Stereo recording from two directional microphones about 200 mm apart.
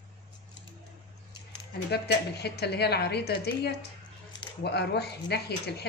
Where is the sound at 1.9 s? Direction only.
55° left (ahead or behind).